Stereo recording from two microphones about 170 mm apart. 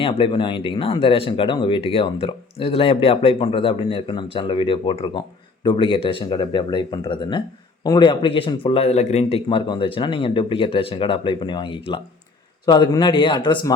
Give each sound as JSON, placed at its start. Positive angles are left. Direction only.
{"t": 0.0, "sound": "speech", "side_deg": 30}